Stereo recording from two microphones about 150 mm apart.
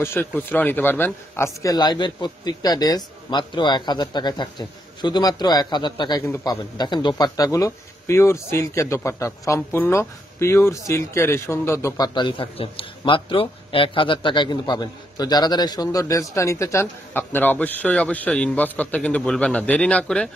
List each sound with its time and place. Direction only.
0.0 s a man's voice: 15° left (ahead or behind)
12.1 s a man's voice: 30° left (ahead or behind); by 20.2 s 10° left (ahead or behind)